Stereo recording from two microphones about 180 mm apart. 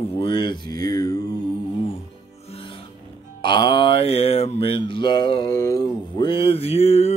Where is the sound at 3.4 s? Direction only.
25° left (ahead or behind).